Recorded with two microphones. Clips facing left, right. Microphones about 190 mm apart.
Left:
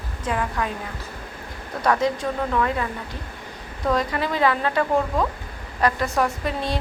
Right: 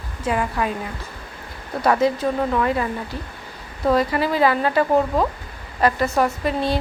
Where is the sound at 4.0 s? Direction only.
5° right (ahead or behind).